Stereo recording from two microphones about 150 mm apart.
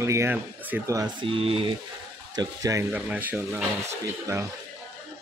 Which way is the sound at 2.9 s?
10° right (ahead or behind).